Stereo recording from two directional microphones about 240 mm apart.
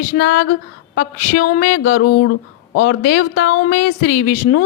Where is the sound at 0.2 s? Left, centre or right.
Left.